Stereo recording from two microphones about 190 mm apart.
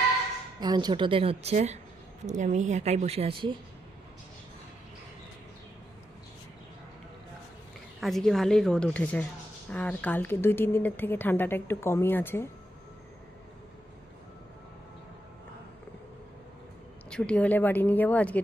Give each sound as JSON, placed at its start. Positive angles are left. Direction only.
{"t": 0.6, "sound": "a woman's voice", "side_deg": -20}
{"t": 8.0, "sound": "speech", "side_deg": 0}
{"t": 17.1, "sound": "speech", "side_deg": 5}